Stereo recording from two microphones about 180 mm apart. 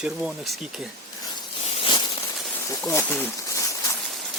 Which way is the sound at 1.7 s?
30° left (ahead or behind).